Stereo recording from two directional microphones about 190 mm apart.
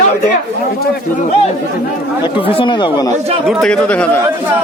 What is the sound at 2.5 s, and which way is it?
Speech, 25° left (ahead or behind).